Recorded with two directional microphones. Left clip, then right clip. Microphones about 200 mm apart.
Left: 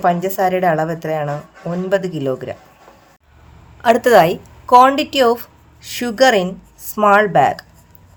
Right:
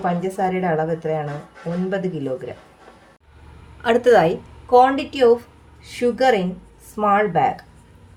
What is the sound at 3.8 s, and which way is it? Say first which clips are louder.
A woman's voice: left 4 dB; 35° left (ahead or behind).